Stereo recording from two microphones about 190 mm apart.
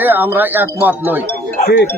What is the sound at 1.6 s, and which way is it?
Speech, 55° left (ahead or behind).